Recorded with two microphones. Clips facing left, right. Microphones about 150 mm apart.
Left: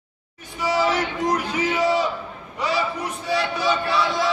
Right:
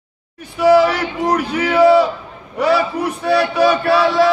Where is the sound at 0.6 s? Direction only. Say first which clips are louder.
Right 10 dB; 60° right (ahead or behind).